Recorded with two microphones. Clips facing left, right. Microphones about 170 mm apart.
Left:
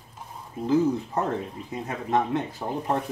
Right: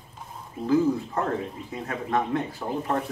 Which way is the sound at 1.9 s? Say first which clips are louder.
Left 1 dB; 20° left (ahead or behind).